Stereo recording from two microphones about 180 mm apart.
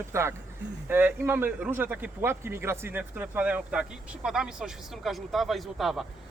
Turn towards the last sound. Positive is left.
turn(degrees=0)  # may be behind; listen again after turning